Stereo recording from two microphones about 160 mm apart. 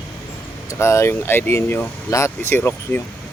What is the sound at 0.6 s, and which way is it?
Speech, 15° left (ahead or behind).